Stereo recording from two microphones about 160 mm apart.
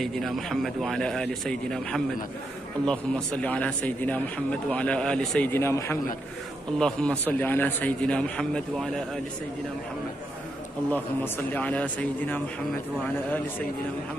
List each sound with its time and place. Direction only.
0.0 s a man's voice: centre (ahead or behind)
5.5 s a man's voice: 15° left (ahead or behind)
10.9 s a man's voice: 10° left (ahead or behind)